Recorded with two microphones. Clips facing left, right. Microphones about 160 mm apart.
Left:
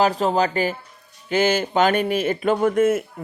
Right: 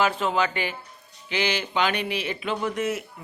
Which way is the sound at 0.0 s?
40° left (ahead or behind).